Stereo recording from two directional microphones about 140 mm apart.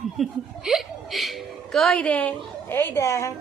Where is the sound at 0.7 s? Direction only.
Centre (ahead or behind).